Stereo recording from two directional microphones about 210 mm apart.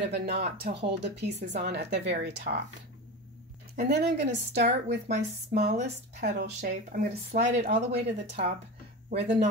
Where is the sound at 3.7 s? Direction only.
50° right (ahead or behind).